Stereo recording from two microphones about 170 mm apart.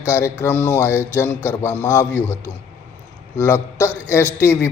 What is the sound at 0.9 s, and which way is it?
Speech, 10° right (ahead or behind).